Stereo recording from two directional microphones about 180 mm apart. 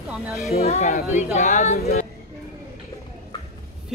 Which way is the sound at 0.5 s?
40° left (ahead or behind).